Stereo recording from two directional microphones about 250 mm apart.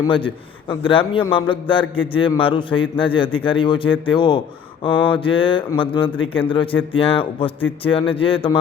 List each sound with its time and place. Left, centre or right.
0.0 s a man's voice: centre